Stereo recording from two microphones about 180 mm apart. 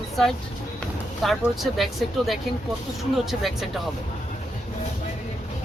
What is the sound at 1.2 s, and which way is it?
Speech, centre (ahead or behind).